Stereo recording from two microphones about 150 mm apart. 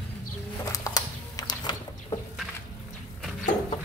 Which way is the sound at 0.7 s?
25° left (ahead or behind).